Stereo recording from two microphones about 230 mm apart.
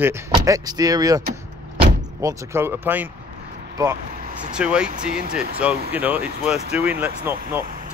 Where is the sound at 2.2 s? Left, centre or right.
Centre.